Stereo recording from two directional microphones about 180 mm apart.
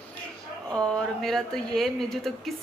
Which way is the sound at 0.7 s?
Centre (ahead or behind).